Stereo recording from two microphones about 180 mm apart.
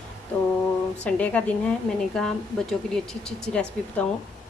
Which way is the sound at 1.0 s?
5° left (ahead or behind).